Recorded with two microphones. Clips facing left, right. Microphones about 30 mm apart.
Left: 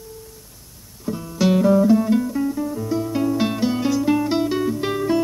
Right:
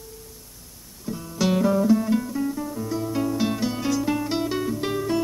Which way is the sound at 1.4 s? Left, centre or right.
Centre.